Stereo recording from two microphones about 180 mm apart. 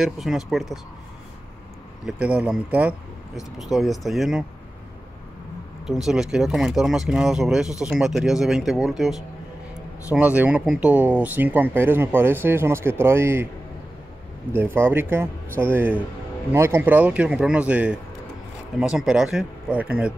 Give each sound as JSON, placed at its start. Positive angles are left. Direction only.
{"t": 0.0, "sound": "speech", "side_deg": 0}
{"t": 2.0, "sound": "speech", "side_deg": -5}
{"t": 5.9, "sound": "speech", "side_deg": 0}
{"t": 14.5, "sound": "speech", "side_deg": -10}